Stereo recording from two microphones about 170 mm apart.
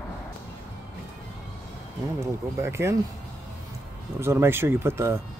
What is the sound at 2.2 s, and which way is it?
Speech, 15° right (ahead or behind).